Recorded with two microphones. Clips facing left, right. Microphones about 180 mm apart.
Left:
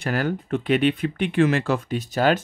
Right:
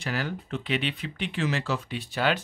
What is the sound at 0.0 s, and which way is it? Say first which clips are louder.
Speech: left 7 dB; 50° left (ahead or behind).